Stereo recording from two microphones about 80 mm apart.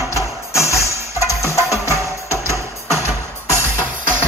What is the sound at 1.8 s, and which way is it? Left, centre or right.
Music, right.